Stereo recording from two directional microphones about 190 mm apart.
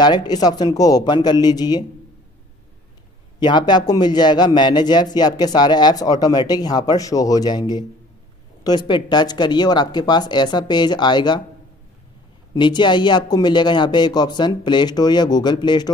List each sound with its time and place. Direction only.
0.0 s speech: 20° left (ahead or behind)
3.3 s speech: 25° left (ahead or behind)
12.5 s speech: 25° left (ahead or behind)